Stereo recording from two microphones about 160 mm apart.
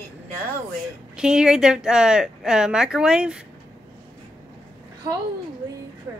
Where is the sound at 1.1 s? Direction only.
5° right (ahead or behind).